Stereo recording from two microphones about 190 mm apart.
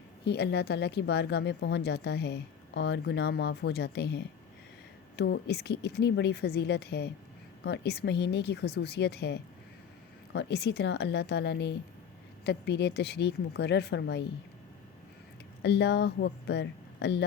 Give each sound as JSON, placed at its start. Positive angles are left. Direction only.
{"t": 0.3, "sound": "speech", "side_deg": 60}
{"t": 15.6, "sound": "speech", "side_deg": 65}